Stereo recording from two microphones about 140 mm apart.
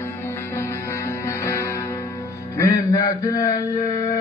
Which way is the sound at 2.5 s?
25° left (ahead or behind).